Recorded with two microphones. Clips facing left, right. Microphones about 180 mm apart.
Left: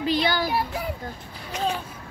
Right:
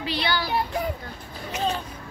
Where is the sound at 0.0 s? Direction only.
45° left (ahead or behind).